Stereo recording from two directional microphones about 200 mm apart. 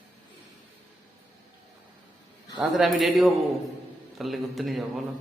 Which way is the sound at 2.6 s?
Centre (ahead or behind).